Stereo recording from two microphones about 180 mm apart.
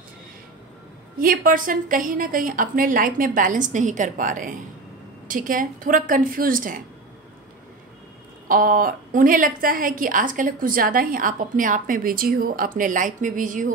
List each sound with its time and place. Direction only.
1.1 s a woman's voice: 50° right (ahead or behind)
8.5 s a woman's voice: 50° right (ahead or behind)